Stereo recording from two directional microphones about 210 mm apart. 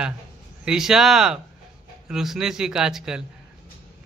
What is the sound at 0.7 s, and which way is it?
Speech, centre (ahead or behind).